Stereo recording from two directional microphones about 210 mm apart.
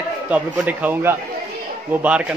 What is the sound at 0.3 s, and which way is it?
Speech, 5° right (ahead or behind).